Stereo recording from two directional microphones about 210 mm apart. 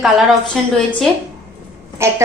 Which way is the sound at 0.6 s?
Centre (ahead or behind).